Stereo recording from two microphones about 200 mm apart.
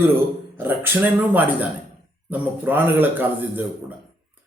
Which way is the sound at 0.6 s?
10° right (ahead or behind).